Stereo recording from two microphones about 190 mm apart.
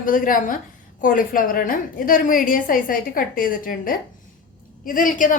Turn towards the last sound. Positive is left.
turn(degrees=45)  # may be behind; listen again after turning